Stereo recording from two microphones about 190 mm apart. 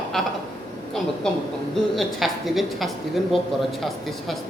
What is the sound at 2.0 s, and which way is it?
Speech, centre (ahead or behind).